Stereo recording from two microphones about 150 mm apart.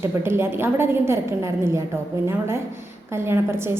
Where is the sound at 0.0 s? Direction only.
15° right (ahead or behind).